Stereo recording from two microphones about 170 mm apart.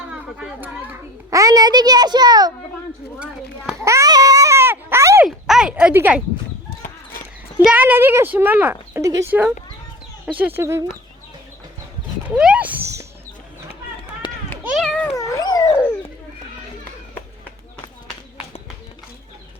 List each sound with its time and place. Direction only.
0.1 s a child's voice: 5° right (ahead or behind); by 2.5 s 25° right (ahead or behind)
3.8 s babbling: 20° right (ahead or behind)
5.2 s speech: 5° right (ahead or behind)
7.6 s speech: 10° right (ahead or behind)
12.4 s horse: 5° right (ahead or behind)
14.6 s a sound: 5° right (ahead or behind)
14.8 s cat: 5° left (ahead or behind)
15.1 s dog: 20° left (ahead or behind)